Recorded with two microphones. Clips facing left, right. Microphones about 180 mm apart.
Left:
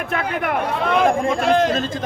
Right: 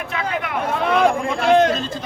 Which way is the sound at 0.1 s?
55° left (ahead or behind).